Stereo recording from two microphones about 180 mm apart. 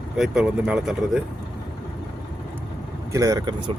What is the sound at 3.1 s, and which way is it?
Speech, 20° right (ahead or behind).